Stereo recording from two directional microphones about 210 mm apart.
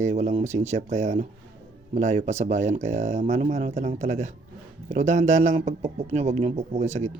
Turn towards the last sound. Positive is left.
turn(degrees=-35)  # may be behind; listen again after turning